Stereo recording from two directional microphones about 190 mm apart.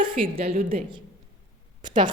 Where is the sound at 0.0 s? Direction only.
25° right (ahead or behind).